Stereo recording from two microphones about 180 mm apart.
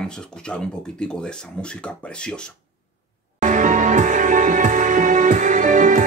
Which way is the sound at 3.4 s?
45° right (ahead or behind).